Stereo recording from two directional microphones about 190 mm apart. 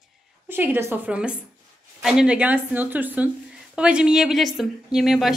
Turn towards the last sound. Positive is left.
turn(degrees=0)  # may be behind; listen again after turning